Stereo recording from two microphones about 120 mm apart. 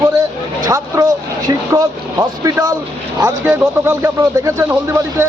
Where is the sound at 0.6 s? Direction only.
30° right (ahead or behind).